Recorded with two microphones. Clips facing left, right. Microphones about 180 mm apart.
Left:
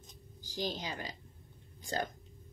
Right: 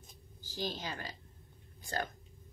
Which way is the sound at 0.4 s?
15° left (ahead or behind).